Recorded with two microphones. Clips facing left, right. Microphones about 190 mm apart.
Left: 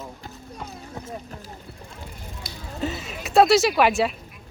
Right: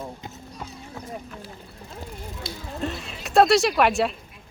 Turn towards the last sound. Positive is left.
turn(degrees=0)  # may be behind; listen again after turning